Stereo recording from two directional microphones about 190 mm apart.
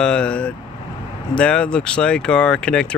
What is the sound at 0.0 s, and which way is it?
Speech, 5° left (ahead or behind).